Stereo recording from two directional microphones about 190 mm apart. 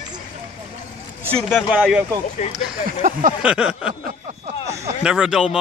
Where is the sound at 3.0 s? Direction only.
40° right (ahead or behind).